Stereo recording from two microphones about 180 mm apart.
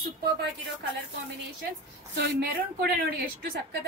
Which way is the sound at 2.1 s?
65° right (ahead or behind).